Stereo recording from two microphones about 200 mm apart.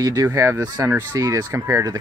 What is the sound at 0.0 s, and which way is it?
Speech, 20° right (ahead or behind).